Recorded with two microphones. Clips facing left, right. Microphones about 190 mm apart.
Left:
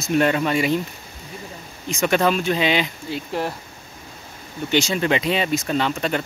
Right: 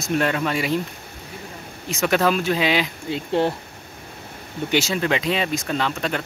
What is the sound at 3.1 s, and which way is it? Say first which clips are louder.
Speech: right 4 dB; 25° right (ahead or behind).